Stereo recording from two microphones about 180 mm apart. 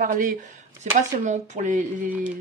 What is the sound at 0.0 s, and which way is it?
Speech, 45° right (ahead or behind).